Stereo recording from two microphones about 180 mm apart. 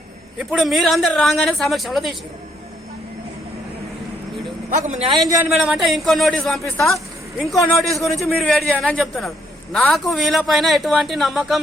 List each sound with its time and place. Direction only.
0.3 s speech: centre (ahead or behind)
4.7 s a man's voice: 40° right (ahead or behind)
5.5 s speech: 5° right (ahead or behind)